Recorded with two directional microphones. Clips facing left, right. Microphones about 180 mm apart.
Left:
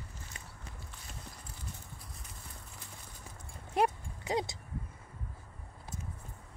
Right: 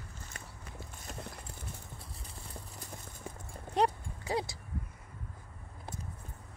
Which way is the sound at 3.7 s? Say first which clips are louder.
Even; 15° left (ahead or behind).